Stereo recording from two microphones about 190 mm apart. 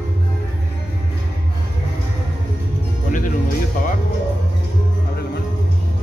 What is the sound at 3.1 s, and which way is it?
Music, 45° left (ahead or behind).